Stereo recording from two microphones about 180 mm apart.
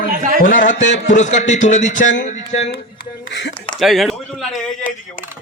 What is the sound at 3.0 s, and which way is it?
Speech, 70° left (ahead or behind).